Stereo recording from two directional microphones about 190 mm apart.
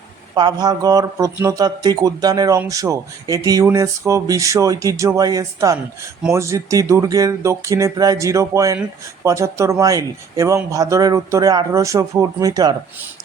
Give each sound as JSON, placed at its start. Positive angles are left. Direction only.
{"t": 0.3, "sound": "speech", "side_deg": -20}